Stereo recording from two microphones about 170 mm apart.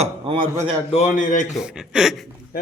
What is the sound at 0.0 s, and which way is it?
Speech, 35° right (ahead or behind).